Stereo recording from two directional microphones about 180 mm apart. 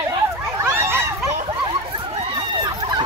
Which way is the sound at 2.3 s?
25° right (ahead or behind).